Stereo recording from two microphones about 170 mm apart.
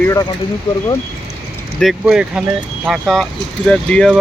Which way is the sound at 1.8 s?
Centre (ahead or behind).